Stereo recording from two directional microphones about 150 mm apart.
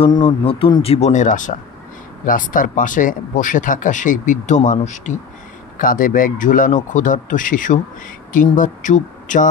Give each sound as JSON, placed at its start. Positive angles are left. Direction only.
{"t": 0.0, "sound": "speech", "side_deg": 40}
{"t": 0.8, "sound": "speech", "side_deg": 45}
{"t": 5.8, "sound": "speech", "side_deg": 65}